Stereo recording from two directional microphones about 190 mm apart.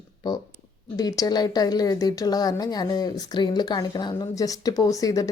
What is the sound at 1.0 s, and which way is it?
A woman's voice, 20° left (ahead or behind).